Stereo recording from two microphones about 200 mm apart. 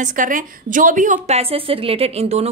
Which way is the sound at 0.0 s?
40° right (ahead or behind).